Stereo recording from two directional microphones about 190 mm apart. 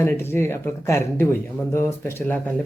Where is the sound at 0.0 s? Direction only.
10° left (ahead or behind).